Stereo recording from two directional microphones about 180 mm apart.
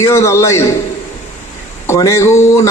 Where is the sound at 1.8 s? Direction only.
15° left (ahead or behind).